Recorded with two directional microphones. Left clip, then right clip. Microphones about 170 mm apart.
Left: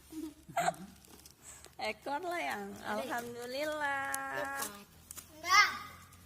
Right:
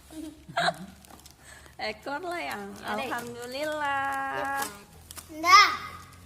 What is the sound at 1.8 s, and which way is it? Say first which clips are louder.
A woman's voice: right 4 dB; 25° left (ahead or behind).